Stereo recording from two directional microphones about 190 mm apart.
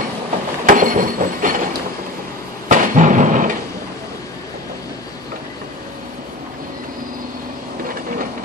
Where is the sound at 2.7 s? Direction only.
40° right (ahead or behind).